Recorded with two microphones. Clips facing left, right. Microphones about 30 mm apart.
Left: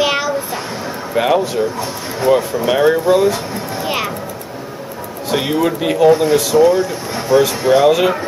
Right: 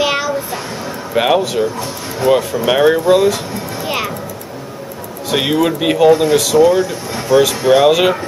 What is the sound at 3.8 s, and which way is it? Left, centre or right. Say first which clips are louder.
Music: even; centre.